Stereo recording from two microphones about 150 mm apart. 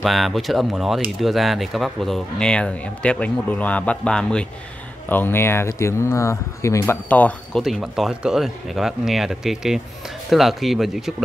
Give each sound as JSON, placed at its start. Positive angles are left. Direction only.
{"t": 0.0, "sound": "speech", "side_deg": 0}
{"t": 7.6, "sound": "speech", "side_deg": 0}